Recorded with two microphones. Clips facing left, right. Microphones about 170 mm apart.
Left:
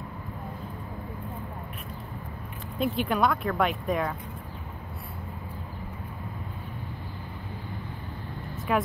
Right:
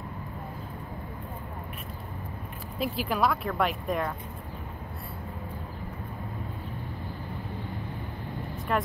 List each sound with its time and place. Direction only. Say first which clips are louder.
2.8 s speech: left 2 dB; centre (ahead or behind)
8.7 s speech: left 2 dB; 5° left (ahead or behind)